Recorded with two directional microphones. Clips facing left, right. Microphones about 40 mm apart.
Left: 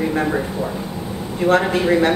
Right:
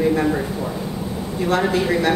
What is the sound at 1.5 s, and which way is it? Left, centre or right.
Speech, left.